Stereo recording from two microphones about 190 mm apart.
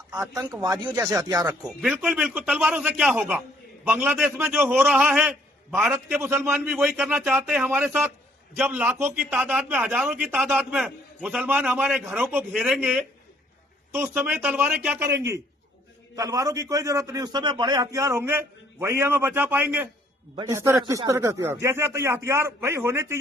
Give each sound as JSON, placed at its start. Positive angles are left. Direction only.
{"t": 0.5, "sound": "a man's voice", "side_deg": -20}
{"t": 1.6, "sound": "a man's voice", "side_deg": -5}